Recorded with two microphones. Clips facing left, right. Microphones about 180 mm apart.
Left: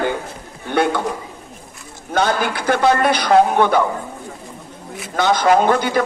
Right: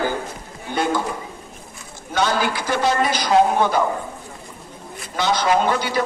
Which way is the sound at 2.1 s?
55° left (ahead or behind).